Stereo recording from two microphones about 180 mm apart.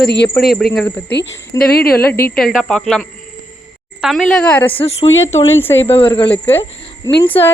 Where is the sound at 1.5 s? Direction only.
20° left (ahead or behind).